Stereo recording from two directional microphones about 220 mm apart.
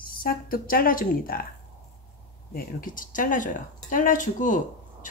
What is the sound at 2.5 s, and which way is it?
Speech, 40° left (ahead or behind).